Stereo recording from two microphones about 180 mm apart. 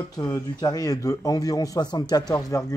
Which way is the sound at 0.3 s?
20° left (ahead or behind).